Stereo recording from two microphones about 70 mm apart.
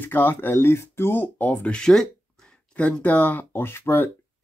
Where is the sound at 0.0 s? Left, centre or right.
Left; by 2.0 s centre.